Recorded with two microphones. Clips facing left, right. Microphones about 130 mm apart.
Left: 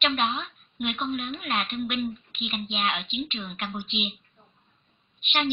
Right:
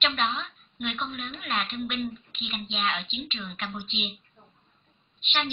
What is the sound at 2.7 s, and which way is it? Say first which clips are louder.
A woman's voice: even; 15° left (ahead or behind).